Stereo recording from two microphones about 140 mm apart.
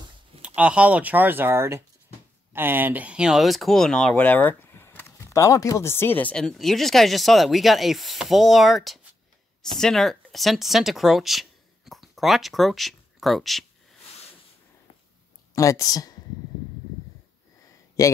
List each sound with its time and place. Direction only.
0.6 s speech: 10° right (ahead or behind)
15.5 s speech: 25° left (ahead or behind)
18.0 s speech: 25° left (ahead or behind)